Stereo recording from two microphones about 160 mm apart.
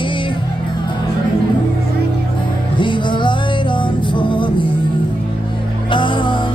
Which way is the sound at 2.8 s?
30° left (ahead or behind).